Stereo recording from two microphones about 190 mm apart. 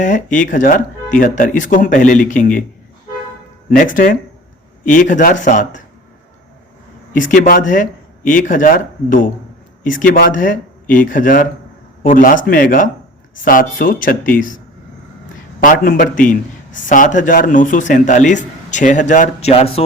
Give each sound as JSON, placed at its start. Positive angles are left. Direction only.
{"t": 0.0, "sound": "speech", "side_deg": 45}
{"t": 3.9, "sound": "speech", "side_deg": 45}
{"t": 7.1, "sound": "speech", "side_deg": 40}
{"t": 15.6, "sound": "a man's voice", "side_deg": 45}